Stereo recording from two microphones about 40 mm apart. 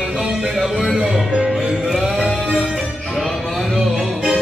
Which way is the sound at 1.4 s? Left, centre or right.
Centre.